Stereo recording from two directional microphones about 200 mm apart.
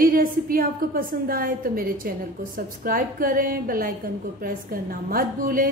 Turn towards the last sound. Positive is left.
turn(degrees=-45)  # may be behind; listen again after turning